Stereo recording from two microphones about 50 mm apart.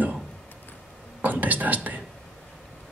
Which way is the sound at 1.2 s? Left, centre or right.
Right.